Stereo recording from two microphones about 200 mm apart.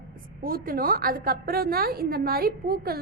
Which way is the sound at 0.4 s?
45° right (ahead or behind).